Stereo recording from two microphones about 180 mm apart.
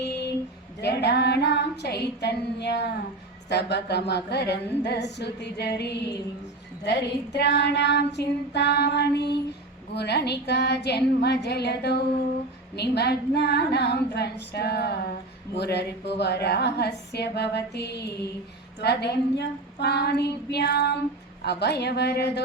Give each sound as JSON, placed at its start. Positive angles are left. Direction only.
{"t": 0.8, "sound": "child singing", "side_deg": 70}
{"t": 12.7, "sound": "female singing", "side_deg": 65}
{"t": 15.5, "sound": "child singing", "side_deg": 70}